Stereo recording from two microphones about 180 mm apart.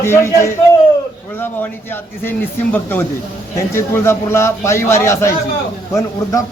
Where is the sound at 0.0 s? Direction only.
15° left (ahead or behind).